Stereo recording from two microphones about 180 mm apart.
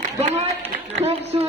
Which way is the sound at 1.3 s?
30° right (ahead or behind).